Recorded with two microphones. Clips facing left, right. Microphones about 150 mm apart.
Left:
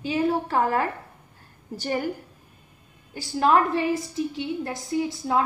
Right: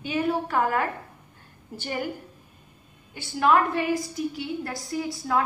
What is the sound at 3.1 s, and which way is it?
A woman's voice, 30° left (ahead or behind).